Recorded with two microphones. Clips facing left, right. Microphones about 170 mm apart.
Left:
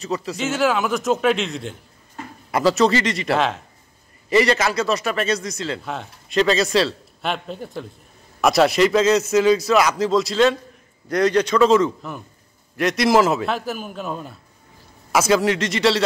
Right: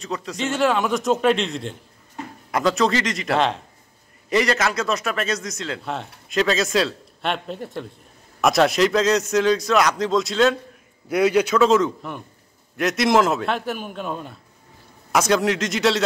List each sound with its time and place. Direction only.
0.0 s a man's voice: 5° left (ahead or behind)